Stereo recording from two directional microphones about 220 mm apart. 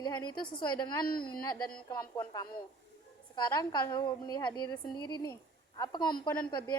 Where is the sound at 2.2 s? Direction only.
15° left (ahead or behind).